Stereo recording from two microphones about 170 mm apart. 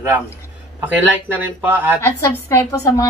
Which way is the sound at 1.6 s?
10° right (ahead or behind).